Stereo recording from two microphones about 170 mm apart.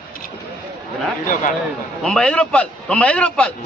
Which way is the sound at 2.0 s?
5° left (ahead or behind).